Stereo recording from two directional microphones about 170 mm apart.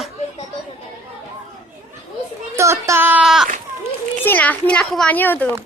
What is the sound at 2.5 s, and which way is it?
Speech, 15° right (ahead or behind).